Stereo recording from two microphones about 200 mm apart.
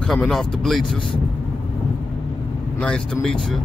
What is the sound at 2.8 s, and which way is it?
Speech, 5° left (ahead or behind).